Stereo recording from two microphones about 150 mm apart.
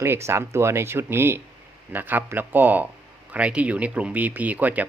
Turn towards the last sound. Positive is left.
turn(degrees=-10)  # may be behind; listen again after turning